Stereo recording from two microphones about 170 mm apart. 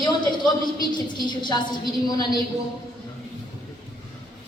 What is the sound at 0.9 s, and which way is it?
Speech, 25° left (ahead or behind).